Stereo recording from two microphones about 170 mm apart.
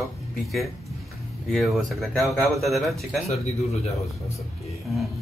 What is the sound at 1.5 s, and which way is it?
A man's voice, centre (ahead or behind).